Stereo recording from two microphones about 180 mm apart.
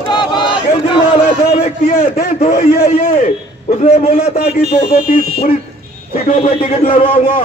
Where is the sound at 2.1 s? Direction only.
55° left (ahead or behind); by 7.1 s 35° left (ahead or behind).